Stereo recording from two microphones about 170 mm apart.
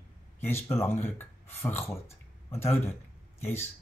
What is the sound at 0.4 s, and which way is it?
Speech, 15° left (ahead or behind).